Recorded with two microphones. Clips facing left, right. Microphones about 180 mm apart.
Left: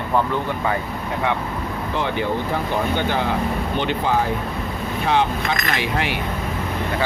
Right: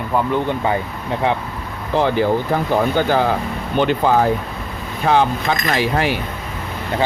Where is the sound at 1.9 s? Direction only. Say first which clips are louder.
Right 7 dB; 35° right (ahead or behind).